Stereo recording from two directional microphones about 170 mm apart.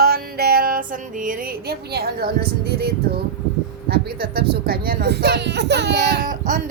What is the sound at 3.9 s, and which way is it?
Speech, 65° right (ahead or behind).